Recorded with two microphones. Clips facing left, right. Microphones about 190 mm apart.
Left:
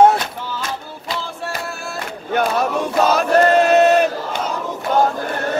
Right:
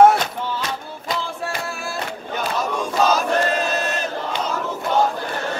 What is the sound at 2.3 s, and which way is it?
Battle cry, 65° left (ahead or behind).